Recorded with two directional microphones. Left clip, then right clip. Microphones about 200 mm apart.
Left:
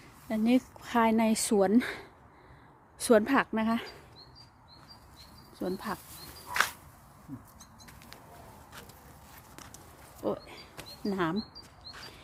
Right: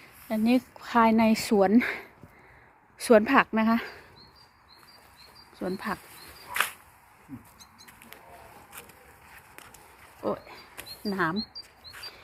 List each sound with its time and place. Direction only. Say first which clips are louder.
0.3 s speech: right 2 dB; 10° left (ahead or behind)
5.5 s speech: right 3 dB; 5° right (ahead or behind)
6.5 s camera: even; 45° right (ahead or behind)
10.2 s speech: right 2 dB; 10° left (ahead or behind)